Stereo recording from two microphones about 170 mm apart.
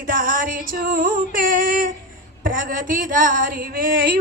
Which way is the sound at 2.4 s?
55° right (ahead or behind).